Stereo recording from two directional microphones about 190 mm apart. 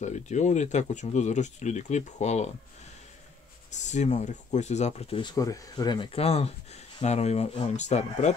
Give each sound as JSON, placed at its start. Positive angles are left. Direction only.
{"t": 0.0, "sound": "speech", "side_deg": 40}
{"t": 3.7, "sound": "speech", "side_deg": 40}